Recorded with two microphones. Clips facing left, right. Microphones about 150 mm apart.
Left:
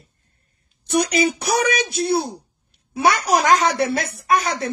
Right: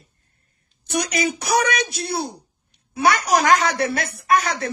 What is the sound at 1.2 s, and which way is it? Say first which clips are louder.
Speech: left 1 dB; 30° left (ahead or behind).